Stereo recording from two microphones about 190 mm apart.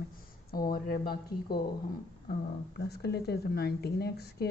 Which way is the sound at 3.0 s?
55° left (ahead or behind).